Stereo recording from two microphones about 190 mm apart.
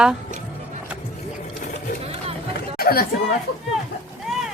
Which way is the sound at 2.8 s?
50° left (ahead or behind).